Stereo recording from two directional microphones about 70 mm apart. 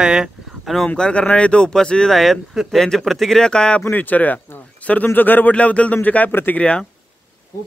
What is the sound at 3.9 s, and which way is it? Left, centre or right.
Speech, left.